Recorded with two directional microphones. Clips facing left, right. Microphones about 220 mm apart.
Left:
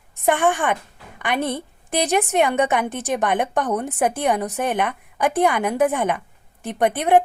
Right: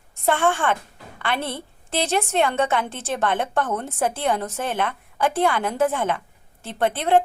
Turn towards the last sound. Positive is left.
turn(degrees=15)  # may be behind; listen again after turning